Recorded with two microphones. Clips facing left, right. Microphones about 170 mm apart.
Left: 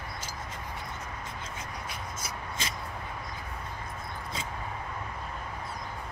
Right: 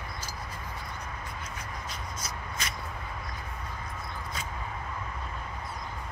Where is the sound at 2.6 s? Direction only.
25° left (ahead or behind).